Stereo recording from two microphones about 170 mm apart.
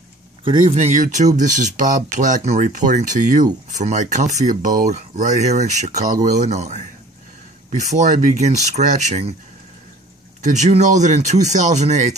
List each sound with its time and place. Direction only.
0.4 s speech: 30° right (ahead or behind)
7.9 s speech: 45° right (ahead or behind)
10.4 s speech: 45° right (ahead or behind)